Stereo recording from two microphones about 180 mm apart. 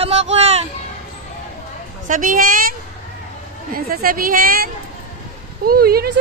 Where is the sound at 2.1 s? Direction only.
50° right (ahead or behind).